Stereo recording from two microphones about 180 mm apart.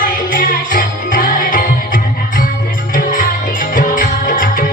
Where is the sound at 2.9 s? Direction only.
50° left (ahead or behind).